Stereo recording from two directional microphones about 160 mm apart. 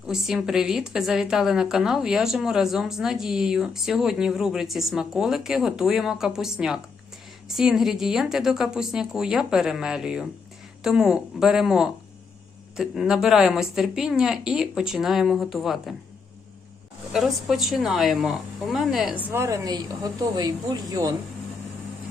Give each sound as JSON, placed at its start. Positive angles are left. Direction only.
{"t": 0.1, "sound": "a woman's voice", "side_deg": -5}
{"t": 17.1, "sound": "a woman's voice", "side_deg": 0}